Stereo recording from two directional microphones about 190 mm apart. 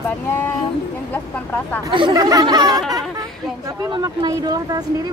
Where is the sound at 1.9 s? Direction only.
25° right (ahead or behind).